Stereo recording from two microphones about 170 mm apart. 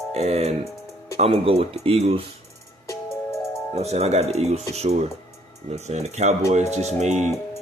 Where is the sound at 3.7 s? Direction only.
40° right (ahead or behind).